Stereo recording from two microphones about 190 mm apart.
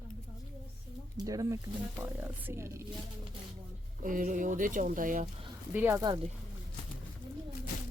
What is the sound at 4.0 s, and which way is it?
Speech, 45° right (ahead or behind).